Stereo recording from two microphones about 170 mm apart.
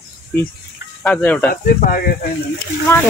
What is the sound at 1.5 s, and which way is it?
Speech, 60° left (ahead or behind).